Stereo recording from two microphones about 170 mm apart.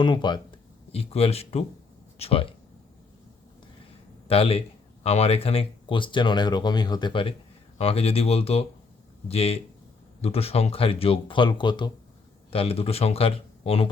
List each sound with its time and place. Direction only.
0.0 s speech: 25° left (ahead or behind)
4.3 s speech: 35° left (ahead or behind)